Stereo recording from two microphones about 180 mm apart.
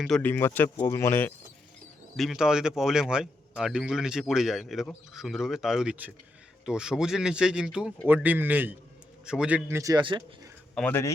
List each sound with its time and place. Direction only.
0.0 s speech: 5° left (ahead or behind)
2.1 s a man's voice: centre (ahead or behind); by 10.5 s 25° right (ahead or behind)
10.8 s speech: 10° left (ahead or behind)